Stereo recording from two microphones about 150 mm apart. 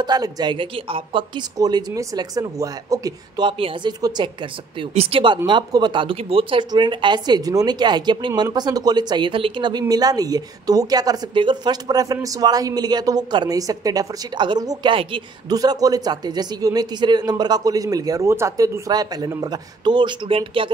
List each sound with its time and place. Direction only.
0.0 s speech: 25° right (ahead or behind)